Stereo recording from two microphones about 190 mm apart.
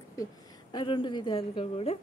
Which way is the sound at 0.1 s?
20° left (ahead or behind).